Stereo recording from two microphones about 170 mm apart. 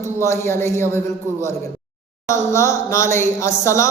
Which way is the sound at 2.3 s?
15° left (ahead or behind).